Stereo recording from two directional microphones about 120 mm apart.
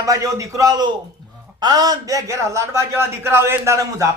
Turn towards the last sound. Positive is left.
turn(degrees=-25)  # may be behind; listen again after turning